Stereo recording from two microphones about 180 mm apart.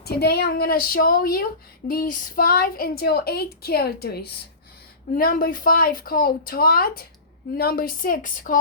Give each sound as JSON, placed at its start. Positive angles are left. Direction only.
{"t": 0.0, "sound": "a woman's voice", "side_deg": 60}